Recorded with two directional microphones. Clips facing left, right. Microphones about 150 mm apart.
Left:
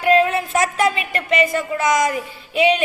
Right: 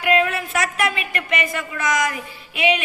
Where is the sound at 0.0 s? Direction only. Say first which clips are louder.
Left 4 dB; 35° left (ahead or behind).